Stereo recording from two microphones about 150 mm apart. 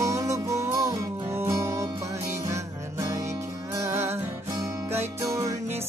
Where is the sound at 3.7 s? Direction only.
15° right (ahead or behind).